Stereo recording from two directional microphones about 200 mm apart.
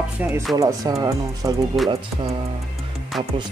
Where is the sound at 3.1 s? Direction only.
Centre (ahead or behind).